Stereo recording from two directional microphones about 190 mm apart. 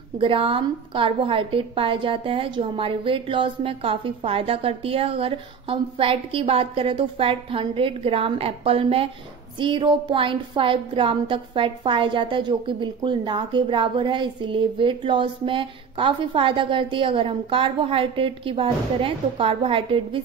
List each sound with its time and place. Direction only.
0.2 s a woman's voice: 25° right (ahead or behind)